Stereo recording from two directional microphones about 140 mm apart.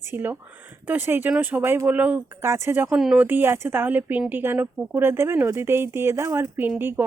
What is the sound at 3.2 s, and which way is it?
Speech, 15° right (ahead or behind).